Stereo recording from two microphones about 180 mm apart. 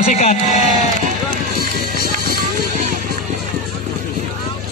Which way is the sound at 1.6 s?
55° right (ahead or behind).